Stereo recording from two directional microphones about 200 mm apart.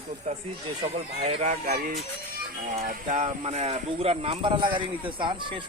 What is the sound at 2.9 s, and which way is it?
Speech, 35° right (ahead or behind).